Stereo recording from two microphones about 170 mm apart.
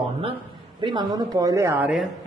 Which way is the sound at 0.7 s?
25° right (ahead or behind).